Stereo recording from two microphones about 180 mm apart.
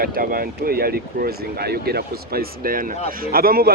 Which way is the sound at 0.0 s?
55° right (ahead or behind).